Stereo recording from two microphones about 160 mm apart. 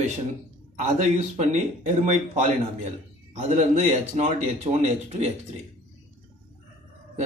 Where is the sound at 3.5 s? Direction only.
50° right (ahead or behind).